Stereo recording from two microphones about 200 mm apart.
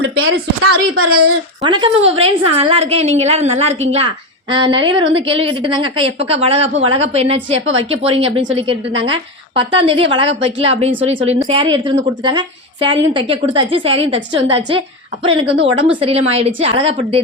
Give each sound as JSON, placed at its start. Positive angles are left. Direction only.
{"t": 0.0, "sound": "speech", "side_deg": -90}
{"t": 1.6, "sound": "a woman's voice", "side_deg": -25}